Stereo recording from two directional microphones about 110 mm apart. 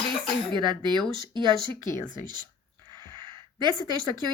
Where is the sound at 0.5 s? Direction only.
45° right (ahead or behind).